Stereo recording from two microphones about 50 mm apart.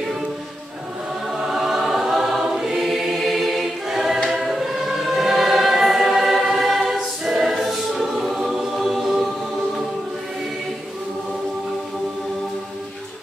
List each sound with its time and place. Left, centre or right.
1.4 s choir: centre